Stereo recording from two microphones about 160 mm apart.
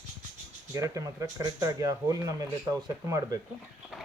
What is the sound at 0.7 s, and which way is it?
Speech, 20° right (ahead or behind).